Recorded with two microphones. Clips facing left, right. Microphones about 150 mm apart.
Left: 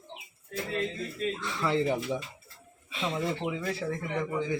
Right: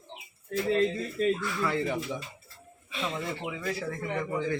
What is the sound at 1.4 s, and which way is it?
Speech, 25° left (ahead or behind).